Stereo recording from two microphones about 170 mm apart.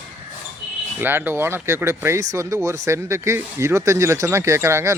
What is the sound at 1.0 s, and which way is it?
Speech, 10° right (ahead or behind).